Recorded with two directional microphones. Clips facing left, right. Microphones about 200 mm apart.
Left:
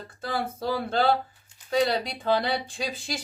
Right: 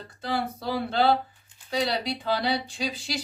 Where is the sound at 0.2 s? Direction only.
45° left (ahead or behind).